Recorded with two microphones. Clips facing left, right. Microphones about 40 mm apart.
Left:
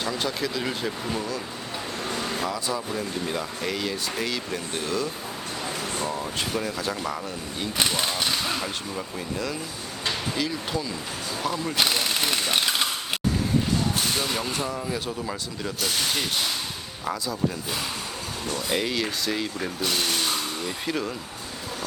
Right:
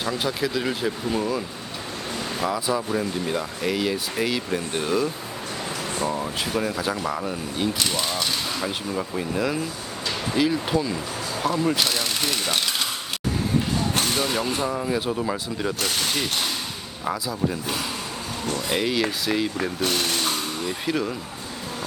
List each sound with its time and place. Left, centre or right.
0.0 s speech: centre
2.4 s speech: centre
6.1 s speech: centre
7.8 s speech: centre
8.6 s speech: centre
10.3 s speech: centre
11.8 s a sound: centre
14.2 s speech: centre
18.5 s speech: centre